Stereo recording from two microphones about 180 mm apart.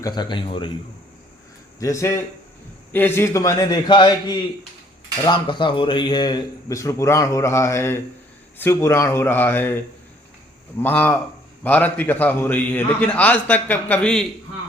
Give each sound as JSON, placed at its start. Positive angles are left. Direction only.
{"t": 0.0, "sound": "a man's voice", "side_deg": 25}
{"t": 1.8, "sound": "a man's voice", "side_deg": 15}
{"t": 10.8, "sound": "a man's voice", "side_deg": 10}